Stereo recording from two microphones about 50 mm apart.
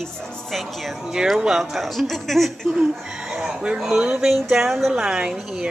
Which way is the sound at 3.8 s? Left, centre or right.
Centre.